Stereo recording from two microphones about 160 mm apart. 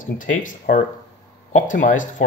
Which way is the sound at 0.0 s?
55° left (ahead or behind).